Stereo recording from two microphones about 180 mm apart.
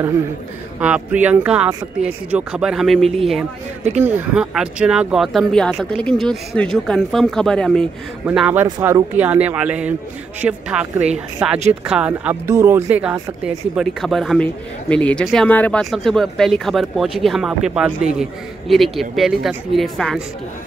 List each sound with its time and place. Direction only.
0.7 s speech: 5° right (ahead or behind)
8.3 s speech: 10° right (ahead or behind)
8.6 s speech: 20° right (ahead or behind)
9.1 s speech: 10° right (ahead or behind)
13.7 s speech: centre (ahead or behind)